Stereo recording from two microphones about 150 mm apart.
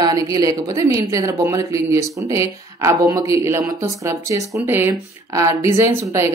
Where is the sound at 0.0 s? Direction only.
25° right (ahead or behind).